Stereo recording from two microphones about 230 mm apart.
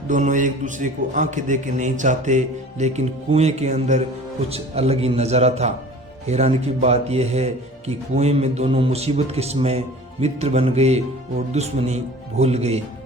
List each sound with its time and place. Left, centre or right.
0.1 s a man's voice: right